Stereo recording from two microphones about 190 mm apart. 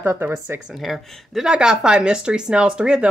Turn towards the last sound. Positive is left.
turn(degrees=-5)  # may be behind; listen again after turning